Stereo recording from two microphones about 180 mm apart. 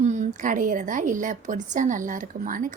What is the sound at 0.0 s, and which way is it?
A woman's voice, 40° right (ahead or behind).